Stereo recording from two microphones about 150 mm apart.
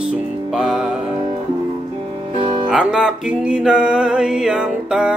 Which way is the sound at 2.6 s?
5° right (ahead or behind).